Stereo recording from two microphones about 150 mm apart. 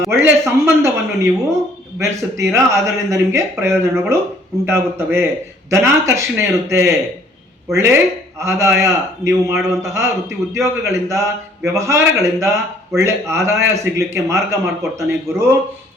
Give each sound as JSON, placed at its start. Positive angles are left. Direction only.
{"t": 0.1, "sound": "a man's voice", "side_deg": -15}